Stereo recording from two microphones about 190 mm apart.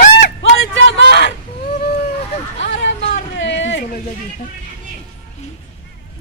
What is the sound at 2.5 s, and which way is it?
Vehicle, 70° left (ahead or behind).